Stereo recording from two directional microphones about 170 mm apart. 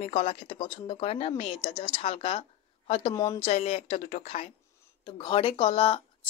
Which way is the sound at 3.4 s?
40° left (ahead or behind).